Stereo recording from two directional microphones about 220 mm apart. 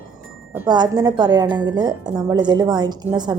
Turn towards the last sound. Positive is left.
turn(degrees=-20)  # may be behind; listen again after turning